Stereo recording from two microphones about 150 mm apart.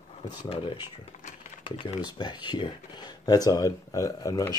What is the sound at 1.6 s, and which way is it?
Speech, 35° left (ahead or behind).